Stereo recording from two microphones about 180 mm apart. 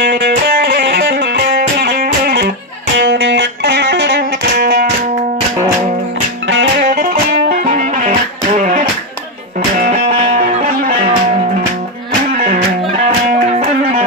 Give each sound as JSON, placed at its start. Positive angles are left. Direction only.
{"t": 0.0, "sound": "music", "side_deg": -65}
{"t": 3.0, "sound": "music", "side_deg": -75}
{"t": 6.4, "sound": "music", "side_deg": -85}
{"t": 6.9, "sound": "music", "side_deg": -55}